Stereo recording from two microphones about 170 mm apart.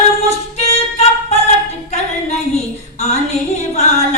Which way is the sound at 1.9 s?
40° left (ahead or behind).